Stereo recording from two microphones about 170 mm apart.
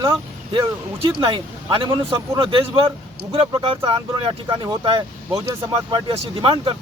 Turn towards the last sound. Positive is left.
turn(degrees=-30)  # may be behind; listen again after turning